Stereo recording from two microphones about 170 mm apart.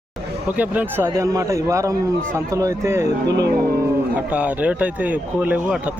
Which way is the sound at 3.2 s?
85° right.